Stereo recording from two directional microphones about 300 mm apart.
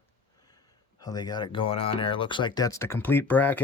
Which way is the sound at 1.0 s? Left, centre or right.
Centre.